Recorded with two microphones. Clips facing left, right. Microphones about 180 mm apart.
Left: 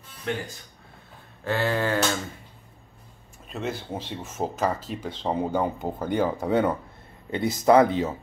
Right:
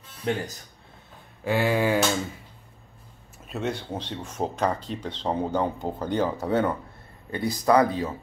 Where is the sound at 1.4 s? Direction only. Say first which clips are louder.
Right 2 dB; 10° right (ahead or behind).